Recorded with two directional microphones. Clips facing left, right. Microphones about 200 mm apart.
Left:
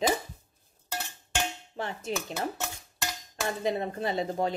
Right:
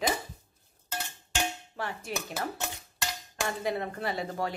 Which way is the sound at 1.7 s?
25° left (ahead or behind).